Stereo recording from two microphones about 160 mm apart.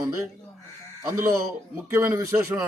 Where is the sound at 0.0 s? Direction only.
15° right (ahead or behind).